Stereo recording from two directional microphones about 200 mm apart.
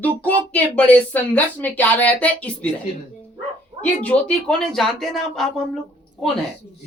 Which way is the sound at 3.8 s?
5° left (ahead or behind).